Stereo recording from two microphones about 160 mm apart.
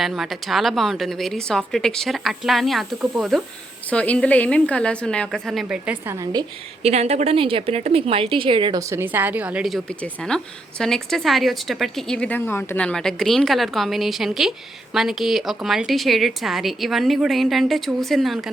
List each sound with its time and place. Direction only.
0.0 s a woman's voice: centre (ahead or behind)
3.8 s a woman's voice: 10° left (ahead or behind); by 6.1 s 10° right (ahead or behind)
6.8 s a woman's voice: 40° right (ahead or behind)
8.8 s a woman's voice: 15° right (ahead or behind); by 18.3 s centre (ahead or behind)